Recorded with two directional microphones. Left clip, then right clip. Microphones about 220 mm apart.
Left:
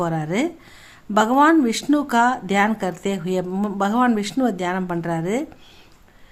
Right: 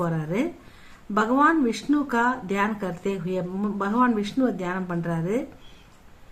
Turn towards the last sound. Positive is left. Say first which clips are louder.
# left 4 dB
turn(degrees=45)  # may be behind; listen again after turning